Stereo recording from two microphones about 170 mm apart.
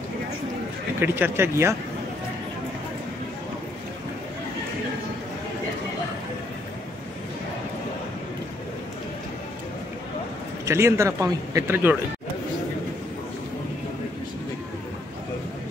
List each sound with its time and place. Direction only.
0.9 s a man's voice: 10° right (ahead or behind)
10.6 s a man's voice: 15° right (ahead or behind)